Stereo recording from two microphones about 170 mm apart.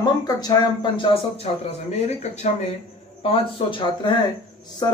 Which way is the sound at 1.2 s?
35° left (ahead or behind).